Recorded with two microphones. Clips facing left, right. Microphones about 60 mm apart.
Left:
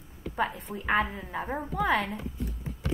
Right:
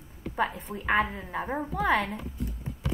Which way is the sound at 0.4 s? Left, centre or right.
Centre.